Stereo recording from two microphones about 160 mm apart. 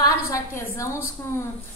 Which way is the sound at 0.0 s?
20° left (ahead or behind).